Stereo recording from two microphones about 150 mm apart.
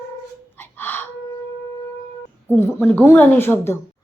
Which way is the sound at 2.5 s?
15° left (ahead or behind).